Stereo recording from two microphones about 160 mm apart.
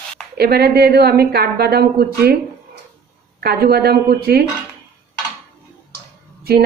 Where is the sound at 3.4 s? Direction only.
75° right (ahead or behind).